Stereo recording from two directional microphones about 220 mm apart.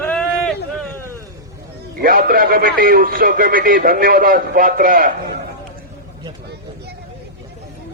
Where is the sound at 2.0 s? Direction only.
40° right (ahead or behind).